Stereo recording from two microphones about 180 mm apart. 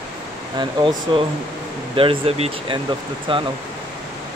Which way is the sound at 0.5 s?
25° right (ahead or behind).